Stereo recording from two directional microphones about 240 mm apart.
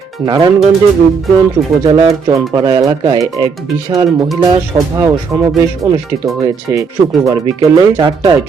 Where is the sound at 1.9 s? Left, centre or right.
Centre.